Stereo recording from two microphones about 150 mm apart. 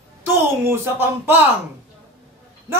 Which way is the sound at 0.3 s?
15° right (ahead or behind).